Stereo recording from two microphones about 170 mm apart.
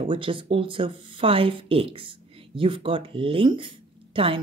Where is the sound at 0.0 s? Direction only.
30° right (ahead or behind).